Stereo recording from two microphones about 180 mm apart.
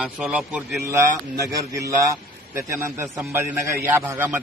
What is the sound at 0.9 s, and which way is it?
A man's voice, 15° right (ahead or behind).